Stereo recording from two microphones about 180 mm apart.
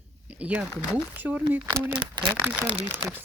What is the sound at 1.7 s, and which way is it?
Speech, 20° right (ahead or behind).